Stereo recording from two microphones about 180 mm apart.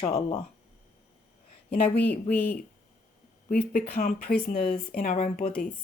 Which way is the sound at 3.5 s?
50° left (ahead or behind).